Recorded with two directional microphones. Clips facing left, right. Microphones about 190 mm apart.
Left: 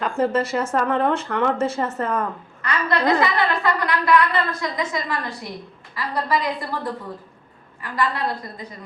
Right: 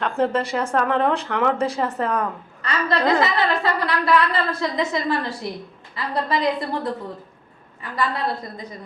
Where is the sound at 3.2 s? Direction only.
30° right (ahead or behind).